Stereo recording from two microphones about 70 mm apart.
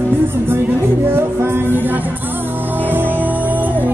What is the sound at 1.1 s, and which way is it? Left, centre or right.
Music, right.